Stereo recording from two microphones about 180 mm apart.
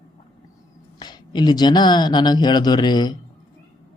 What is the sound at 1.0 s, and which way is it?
Speech, 25° left (ahead or behind).